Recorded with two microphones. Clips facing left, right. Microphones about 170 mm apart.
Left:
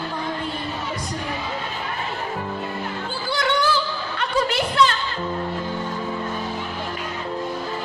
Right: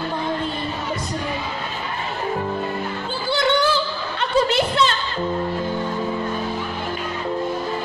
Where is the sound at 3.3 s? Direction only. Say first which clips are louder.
Right 3 dB; 25° right (ahead or behind).